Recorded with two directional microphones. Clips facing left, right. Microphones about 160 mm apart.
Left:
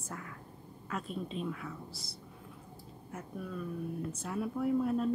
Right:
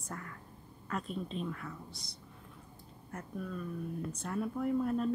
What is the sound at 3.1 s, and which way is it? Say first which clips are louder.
Speech: even; 5° left (ahead or behind).